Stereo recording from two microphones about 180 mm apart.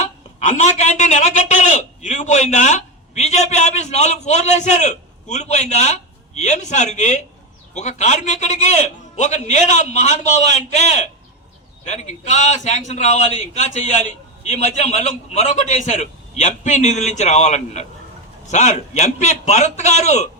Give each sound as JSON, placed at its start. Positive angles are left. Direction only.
{"t": 0.3, "sound": "a man's voice", "side_deg": 40}